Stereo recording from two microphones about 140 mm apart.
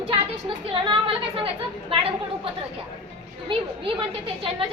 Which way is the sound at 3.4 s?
35° right (ahead or behind).